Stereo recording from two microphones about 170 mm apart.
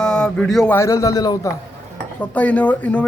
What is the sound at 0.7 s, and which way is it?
Speech, 15° left (ahead or behind).